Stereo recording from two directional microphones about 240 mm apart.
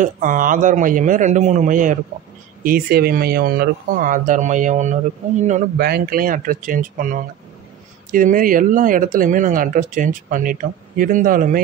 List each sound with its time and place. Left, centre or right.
0.0 s speech: right